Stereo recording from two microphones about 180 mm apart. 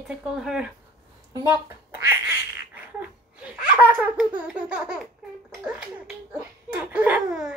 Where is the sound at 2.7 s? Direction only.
10° right (ahead or behind).